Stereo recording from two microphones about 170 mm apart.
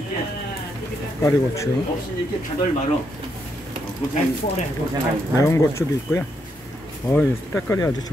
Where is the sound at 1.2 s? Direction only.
20° left (ahead or behind).